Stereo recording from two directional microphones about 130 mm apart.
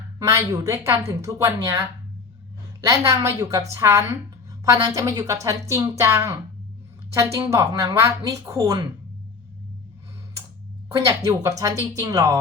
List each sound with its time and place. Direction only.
0.2 s a woman's voice: 25° right (ahead or behind)
2.8 s a woman's voice: 25° right (ahead or behind)
10.9 s a woman's voice: 25° right (ahead or behind)